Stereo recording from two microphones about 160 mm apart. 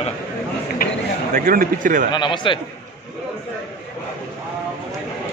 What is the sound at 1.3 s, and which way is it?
Speech, 60° right (ahead or behind).